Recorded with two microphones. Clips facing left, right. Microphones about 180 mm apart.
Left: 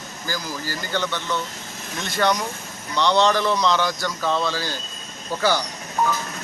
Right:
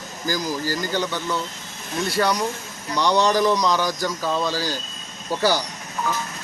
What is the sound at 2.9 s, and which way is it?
Speech, 10° right (ahead or behind).